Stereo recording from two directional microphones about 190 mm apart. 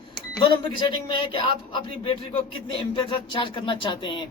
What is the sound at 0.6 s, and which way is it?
Speech, 25° left (ahead or behind).